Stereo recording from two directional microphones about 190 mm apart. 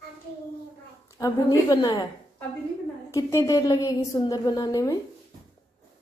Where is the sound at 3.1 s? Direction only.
15° left (ahead or behind).